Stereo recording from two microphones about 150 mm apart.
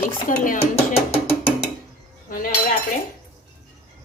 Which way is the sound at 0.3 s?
65° left (ahead or behind).